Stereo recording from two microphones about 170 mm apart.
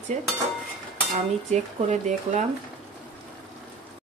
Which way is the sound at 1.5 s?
45° right (ahead or behind).